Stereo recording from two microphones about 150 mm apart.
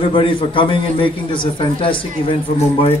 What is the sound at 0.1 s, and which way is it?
A man's voice, 35° left (ahead or behind).